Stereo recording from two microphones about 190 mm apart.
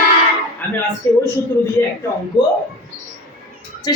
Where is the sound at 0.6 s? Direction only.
10° left (ahead or behind).